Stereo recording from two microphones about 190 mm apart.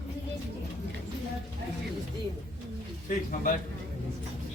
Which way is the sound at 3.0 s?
45° left (ahead or behind).